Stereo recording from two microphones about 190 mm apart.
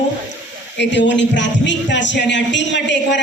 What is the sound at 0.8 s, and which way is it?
A man's voice, 70° left (ahead or behind).